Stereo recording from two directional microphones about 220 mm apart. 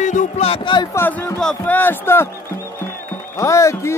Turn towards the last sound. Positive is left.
turn(degrees=15)  # may be behind; listen again after turning